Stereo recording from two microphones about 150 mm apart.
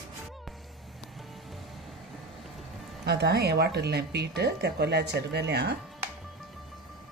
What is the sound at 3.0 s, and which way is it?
Speech, 90° right.